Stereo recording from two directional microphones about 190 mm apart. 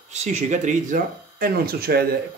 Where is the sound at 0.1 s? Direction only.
35° right (ahead or behind).